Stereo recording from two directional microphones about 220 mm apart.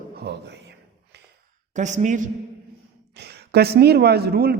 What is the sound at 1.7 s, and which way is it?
Speech, 35° right (ahead or behind).